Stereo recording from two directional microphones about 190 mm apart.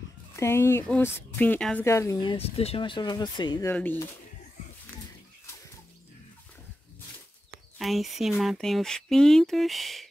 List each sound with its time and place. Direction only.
0.4 s speech: 15° left (ahead or behind)
2.3 s speech: 30° left (ahead or behind)
3.7 s speech: 10° left (ahead or behind)
7.8 s speech: centre (ahead or behind)